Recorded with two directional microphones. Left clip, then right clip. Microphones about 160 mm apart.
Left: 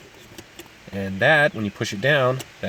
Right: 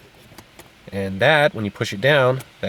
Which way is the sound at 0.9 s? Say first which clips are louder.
Right 1 dB; 30° right (ahead or behind).